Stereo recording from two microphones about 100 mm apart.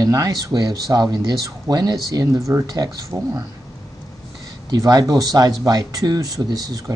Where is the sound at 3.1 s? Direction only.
20° right (ahead or behind).